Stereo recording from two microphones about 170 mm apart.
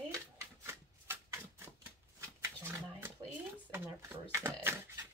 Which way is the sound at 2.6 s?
10° right (ahead or behind).